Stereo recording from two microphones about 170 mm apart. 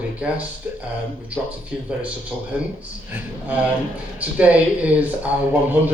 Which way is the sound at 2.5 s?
5° right (ahead or behind).